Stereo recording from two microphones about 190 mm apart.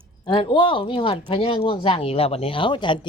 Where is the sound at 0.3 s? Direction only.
25° left (ahead or behind).